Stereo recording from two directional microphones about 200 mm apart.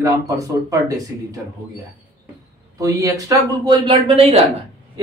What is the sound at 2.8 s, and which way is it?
Speech, 15° right (ahead or behind).